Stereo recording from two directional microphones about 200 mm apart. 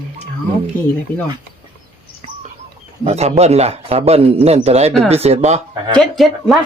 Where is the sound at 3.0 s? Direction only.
30° right (ahead or behind).